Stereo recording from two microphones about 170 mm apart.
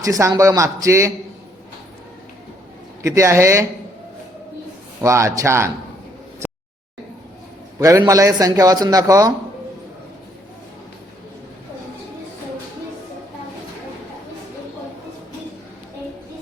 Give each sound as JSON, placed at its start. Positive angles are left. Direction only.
{"t": 0.0, "sound": "speech", "side_deg": -20}
{"t": 3.0, "sound": "speech", "side_deg": -15}
{"t": 4.9, "sound": "speech", "side_deg": -15}
{"t": 7.8, "sound": "a man's voice", "side_deg": -20}